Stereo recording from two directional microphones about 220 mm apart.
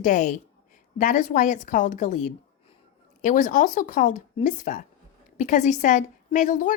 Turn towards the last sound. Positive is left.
turn(degrees=35)  # may be behind; listen again after turning